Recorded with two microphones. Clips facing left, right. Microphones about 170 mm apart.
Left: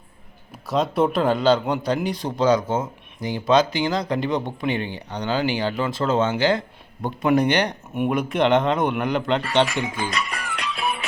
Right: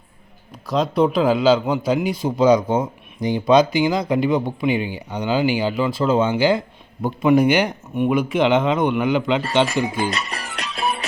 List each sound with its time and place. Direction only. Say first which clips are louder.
0.7 s a man's voice: right 2 dB; centre (ahead or behind)
9.6 s music: right 5 dB; 35° right (ahead or behind)